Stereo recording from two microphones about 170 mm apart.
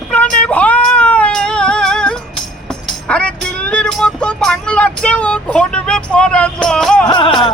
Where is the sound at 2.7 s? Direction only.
5° left (ahead or behind).